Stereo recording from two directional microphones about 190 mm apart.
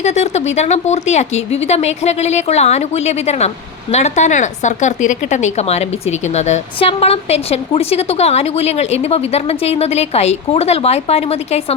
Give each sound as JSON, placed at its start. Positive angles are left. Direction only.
{"t": 0.0, "sound": "speech", "side_deg": 35}